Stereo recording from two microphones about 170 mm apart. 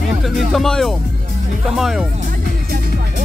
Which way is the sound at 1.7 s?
Centre (ahead or behind).